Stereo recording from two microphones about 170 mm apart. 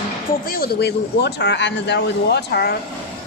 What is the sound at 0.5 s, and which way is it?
Speech, 65° left (ahead or behind).